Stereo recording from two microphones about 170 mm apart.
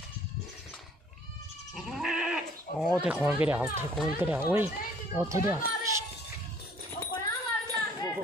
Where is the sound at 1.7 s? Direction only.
Centre (ahead or behind).